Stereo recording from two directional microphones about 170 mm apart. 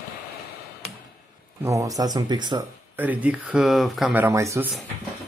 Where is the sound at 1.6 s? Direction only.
20° right (ahead or behind).